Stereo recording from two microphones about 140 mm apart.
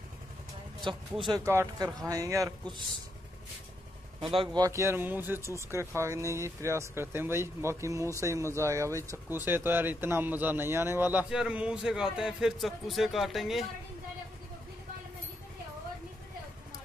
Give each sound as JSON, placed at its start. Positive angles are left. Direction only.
{"t": 0.9, "sound": "speech", "side_deg": -35}
{"t": 4.2, "sound": "speech", "side_deg": -40}
{"t": 4.6, "sound": "a man's voice", "side_deg": -20}